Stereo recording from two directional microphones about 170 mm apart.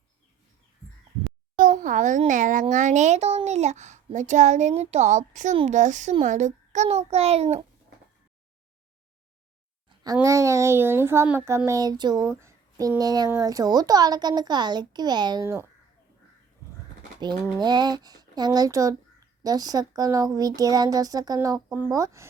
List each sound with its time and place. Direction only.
1.5 s a child's voice: 50° right (ahead or behind)
10.2 s a child's voice: 20° right (ahead or behind)
17.6 s a child's voice: 25° right (ahead or behind)